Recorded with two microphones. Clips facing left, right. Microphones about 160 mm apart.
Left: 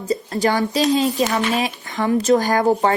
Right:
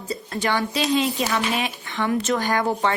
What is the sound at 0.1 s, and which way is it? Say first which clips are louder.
Speech: left 5 dB; 40° left (ahead or behind).